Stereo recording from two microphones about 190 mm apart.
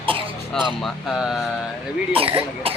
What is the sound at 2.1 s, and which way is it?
Speech, 30° right (ahead or behind).